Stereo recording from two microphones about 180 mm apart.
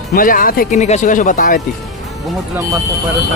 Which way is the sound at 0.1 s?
50° left (ahead or behind).